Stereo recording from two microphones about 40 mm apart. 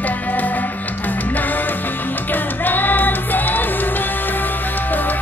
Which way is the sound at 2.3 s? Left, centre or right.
Left.